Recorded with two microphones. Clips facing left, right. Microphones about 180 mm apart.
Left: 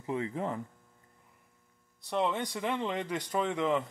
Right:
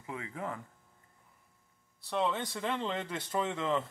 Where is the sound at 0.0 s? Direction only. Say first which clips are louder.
Left 6 dB; 30° left (ahead or behind).